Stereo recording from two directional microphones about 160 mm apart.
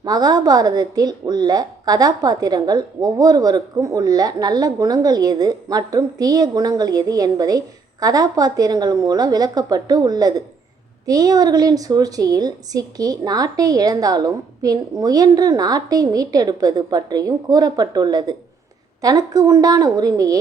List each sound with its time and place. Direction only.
0.0 s a woman's voice: 25° right (ahead or behind)